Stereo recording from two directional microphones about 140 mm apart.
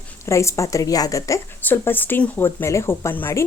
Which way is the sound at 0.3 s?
20° left (ahead or behind).